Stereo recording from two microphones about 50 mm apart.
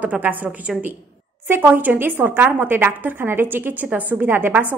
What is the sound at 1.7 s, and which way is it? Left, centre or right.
A woman's voice, right.